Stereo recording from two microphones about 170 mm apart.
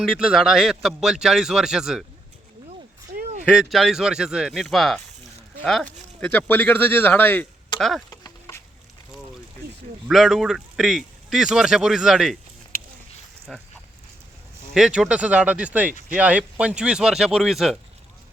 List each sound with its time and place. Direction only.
0.0 s speech: 5° right (ahead or behind)
3.1 s a sound: 45° right (ahead or behind)
3.4 s speech: 5° right (ahead or behind)
8.1 s a sound: 20° left (ahead or behind)
10.1 s speech: centre (ahead or behind)
13.5 s speech: centre (ahead or behind)
14.7 s speech: centre (ahead or behind)